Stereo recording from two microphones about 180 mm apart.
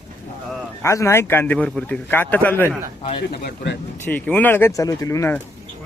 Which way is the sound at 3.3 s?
55° left (ahead or behind).